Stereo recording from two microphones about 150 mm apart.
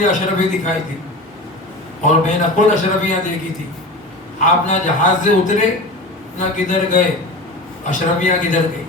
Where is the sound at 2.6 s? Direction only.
55° left (ahead or behind).